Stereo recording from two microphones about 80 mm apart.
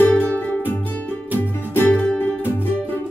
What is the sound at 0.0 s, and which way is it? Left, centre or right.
Music, left.